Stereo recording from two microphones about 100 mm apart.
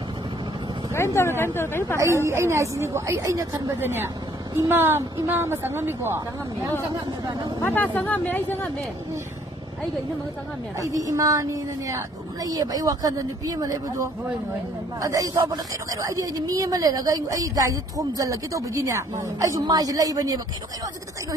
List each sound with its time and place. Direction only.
0.9 s speech: 25° left (ahead or behind)
2.2 s a woman's voice: 30° right (ahead or behind)
7.6 s speech: 20° left (ahead or behind)
10.8 s speech: 35° right (ahead or behind)